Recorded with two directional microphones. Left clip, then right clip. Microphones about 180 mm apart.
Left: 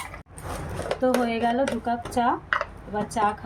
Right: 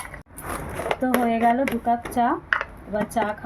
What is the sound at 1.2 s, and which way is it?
A woman's voice, 30° right (ahead or behind).